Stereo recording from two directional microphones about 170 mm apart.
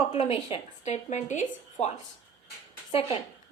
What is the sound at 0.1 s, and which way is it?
A woman's voice, 35° left (ahead or behind).